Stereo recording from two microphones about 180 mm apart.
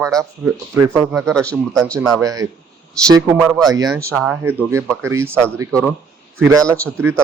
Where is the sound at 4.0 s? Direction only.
15° right (ahead or behind).